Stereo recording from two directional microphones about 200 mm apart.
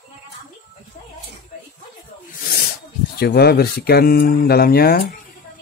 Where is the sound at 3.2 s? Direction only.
50° left (ahead or behind).